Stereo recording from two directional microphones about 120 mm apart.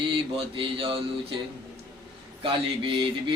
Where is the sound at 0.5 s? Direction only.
45° right (ahead or behind).